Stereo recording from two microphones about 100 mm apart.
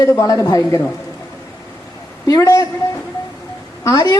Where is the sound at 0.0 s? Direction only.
35° left (ahead or behind).